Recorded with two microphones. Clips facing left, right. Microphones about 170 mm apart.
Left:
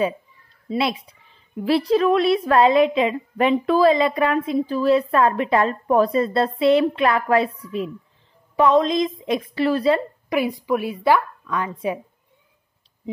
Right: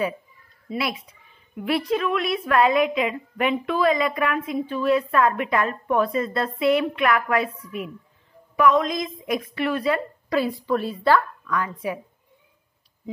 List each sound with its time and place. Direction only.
0.7 s a woman's voice: 25° left (ahead or behind)
10.3 s a woman's voice: 15° left (ahead or behind)